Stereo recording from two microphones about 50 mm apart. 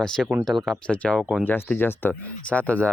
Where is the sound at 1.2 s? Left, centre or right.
Centre.